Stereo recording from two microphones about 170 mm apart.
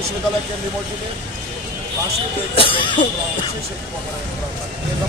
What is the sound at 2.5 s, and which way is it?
Speech, 30° left (ahead or behind).